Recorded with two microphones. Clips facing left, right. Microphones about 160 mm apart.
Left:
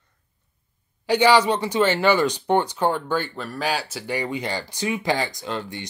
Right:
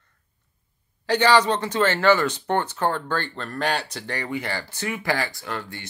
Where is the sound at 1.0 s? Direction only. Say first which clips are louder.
Left 2 dB; 10° left (ahead or behind).